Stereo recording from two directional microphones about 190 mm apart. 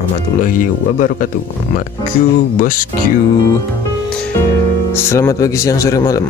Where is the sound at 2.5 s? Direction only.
45° left (ahead or behind).